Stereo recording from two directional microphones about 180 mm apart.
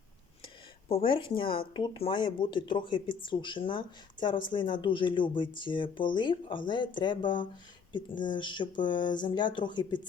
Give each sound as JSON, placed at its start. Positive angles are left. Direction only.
{"t": 0.4, "sound": "speech", "side_deg": 30}